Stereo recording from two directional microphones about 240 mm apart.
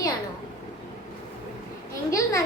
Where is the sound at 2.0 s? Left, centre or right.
Centre.